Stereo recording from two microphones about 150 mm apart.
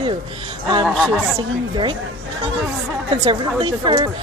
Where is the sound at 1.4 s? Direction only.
35° right (ahead or behind).